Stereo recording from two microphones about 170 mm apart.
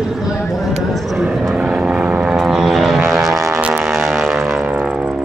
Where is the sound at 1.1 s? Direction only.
5° right (ahead or behind).